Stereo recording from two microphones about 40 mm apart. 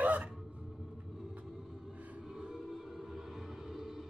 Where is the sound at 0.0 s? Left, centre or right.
Right.